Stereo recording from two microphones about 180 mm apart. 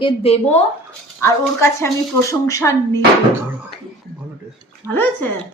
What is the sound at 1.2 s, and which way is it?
Speech, 15° left (ahead or behind).